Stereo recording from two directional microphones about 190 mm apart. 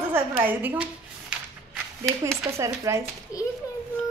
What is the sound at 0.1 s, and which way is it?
Speech, 10° right (ahead or behind).